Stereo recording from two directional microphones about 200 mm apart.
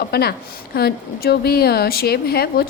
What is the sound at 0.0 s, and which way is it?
Speech, 50° left (ahead or behind).